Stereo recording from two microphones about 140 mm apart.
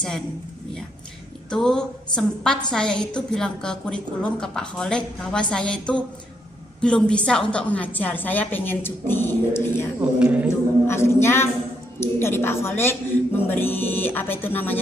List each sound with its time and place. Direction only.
1.5 s a woman's voice: 5° left (ahead or behind)
9.9 s speech: 10° right (ahead or behind)
10.9 s a woman's voice: 15° left (ahead or behind)